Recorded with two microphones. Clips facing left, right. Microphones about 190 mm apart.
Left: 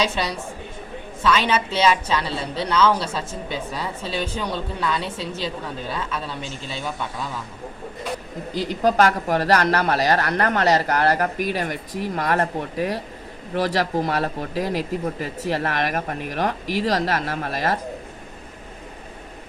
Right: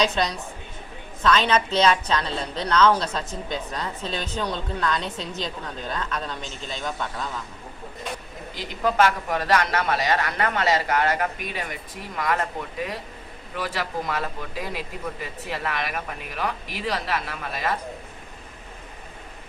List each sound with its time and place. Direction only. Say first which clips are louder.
0.0 s a woman's voice: even; 10° left (ahead or behind)
8.5 s speech: left 4 dB; 35° left (ahead or behind)